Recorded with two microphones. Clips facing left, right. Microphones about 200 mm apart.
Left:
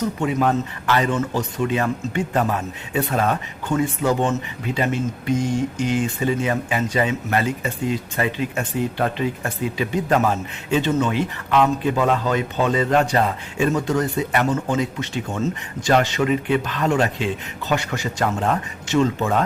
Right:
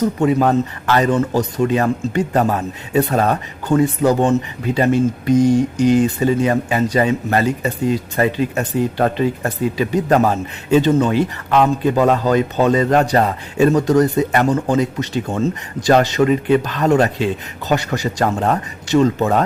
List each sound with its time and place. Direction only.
0.2 s a man's voice: 40° right (ahead or behind)